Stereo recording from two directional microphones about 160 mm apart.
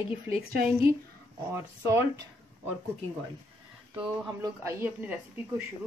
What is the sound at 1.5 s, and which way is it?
Speech, 15° right (ahead or behind).